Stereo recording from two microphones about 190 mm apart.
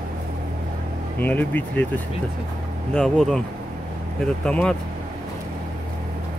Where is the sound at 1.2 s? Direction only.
10° left (ahead or behind).